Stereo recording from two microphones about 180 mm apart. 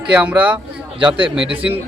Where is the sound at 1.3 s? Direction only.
30° right (ahead or behind).